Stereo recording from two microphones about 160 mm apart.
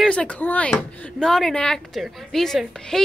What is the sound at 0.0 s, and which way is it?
Speech, 5° left (ahead or behind).